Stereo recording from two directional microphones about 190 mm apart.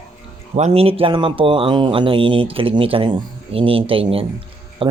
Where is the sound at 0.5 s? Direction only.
35° right (ahead or behind).